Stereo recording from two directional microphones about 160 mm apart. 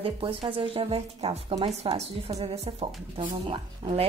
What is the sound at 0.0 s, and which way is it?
Speech, 35° right (ahead or behind).